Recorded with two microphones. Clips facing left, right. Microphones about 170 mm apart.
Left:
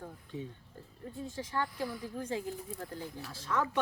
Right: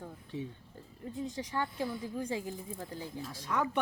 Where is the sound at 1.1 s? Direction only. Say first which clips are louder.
Right 1 dB; 15° right (ahead or behind).